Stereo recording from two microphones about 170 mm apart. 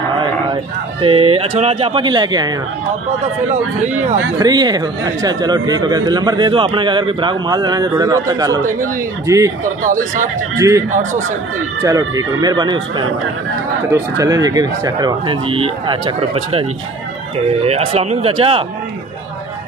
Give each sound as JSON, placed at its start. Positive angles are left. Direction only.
{"t": 1.0, "sound": "speech", "side_deg": -35}
{"t": 4.4, "sound": "speech", "side_deg": -25}
{"t": 9.8, "sound": "speech", "side_deg": -50}
{"t": 11.8, "sound": "speech", "side_deg": -20}
{"t": 14.1, "sound": "speech", "side_deg": -20}
{"t": 17.6, "sound": "speech", "side_deg": -40}